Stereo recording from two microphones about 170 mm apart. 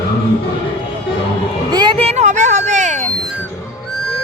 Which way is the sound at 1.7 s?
25° right (ahead or behind).